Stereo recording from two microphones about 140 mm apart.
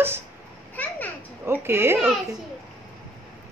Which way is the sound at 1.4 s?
15° right (ahead or behind).